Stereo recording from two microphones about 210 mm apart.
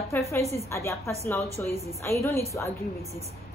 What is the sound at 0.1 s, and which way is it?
A woman's voice, 15° left (ahead or behind).